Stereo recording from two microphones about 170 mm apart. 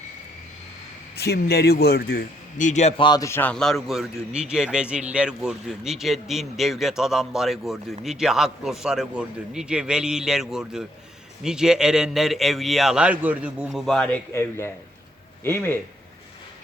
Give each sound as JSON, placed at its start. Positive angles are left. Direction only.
{"t": 1.1, "sound": "a man's voice", "side_deg": 70}
{"t": 3.0, "sound": "a man's voice", "side_deg": 20}